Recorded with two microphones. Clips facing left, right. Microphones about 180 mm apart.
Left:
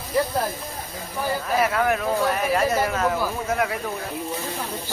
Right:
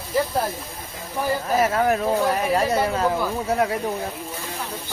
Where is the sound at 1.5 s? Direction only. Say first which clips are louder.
Right 2 dB; 40° right (ahead or behind).